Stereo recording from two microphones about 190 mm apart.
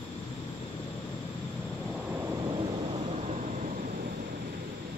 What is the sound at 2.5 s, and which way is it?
Thunder, 30° right (ahead or behind).